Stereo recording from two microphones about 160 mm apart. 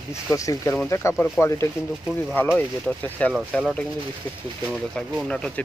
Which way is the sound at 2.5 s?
10° left (ahead or behind).